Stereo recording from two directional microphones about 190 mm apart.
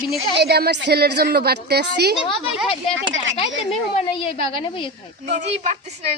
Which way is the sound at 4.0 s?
30° left (ahead or behind).